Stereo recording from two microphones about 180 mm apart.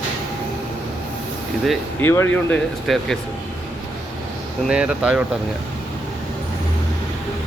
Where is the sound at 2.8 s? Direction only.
Centre (ahead or behind).